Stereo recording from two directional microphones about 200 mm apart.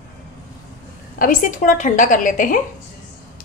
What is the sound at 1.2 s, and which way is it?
A woman's voice, 40° left (ahead or behind).